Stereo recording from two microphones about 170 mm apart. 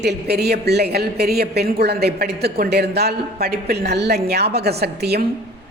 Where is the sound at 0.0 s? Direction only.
70° right (ahead or behind).